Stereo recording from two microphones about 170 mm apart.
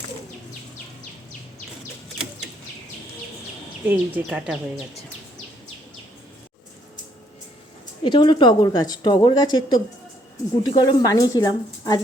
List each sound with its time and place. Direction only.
3.8 s speech: 10° right (ahead or behind)
8.0 s a woman's voice: 30° left (ahead or behind)